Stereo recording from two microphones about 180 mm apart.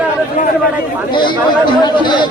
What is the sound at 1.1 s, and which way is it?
Speech, 25° left (ahead or behind).